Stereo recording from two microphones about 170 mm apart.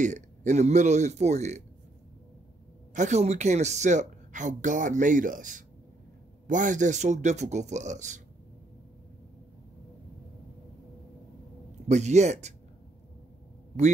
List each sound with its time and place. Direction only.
0.0 s a woman's voice: 45° right (ahead or behind)
2.9 s a woman's voice: 45° right (ahead or behind)
11.9 s speech: 40° right (ahead or behind)